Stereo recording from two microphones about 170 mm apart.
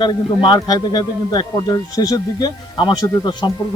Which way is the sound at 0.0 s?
25° left (ahead or behind).